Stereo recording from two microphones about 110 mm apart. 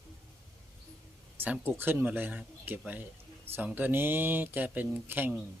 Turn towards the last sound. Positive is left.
turn(degrees=-15)  # may be behind; listen again after turning